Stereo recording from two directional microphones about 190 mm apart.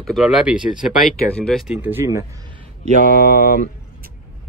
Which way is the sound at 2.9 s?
45° left (ahead or behind).